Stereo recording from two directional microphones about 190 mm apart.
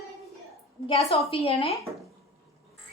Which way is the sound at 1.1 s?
30° left (ahead or behind).